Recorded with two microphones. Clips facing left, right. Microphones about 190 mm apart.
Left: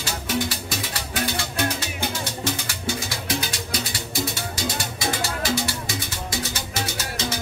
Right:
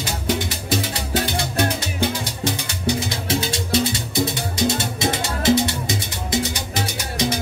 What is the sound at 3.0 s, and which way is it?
Music, 25° right (ahead or behind).